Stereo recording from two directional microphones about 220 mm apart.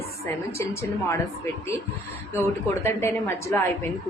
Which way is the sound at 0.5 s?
10° left (ahead or behind).